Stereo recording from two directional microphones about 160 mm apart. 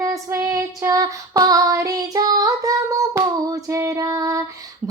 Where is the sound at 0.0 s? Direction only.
20° right (ahead or behind).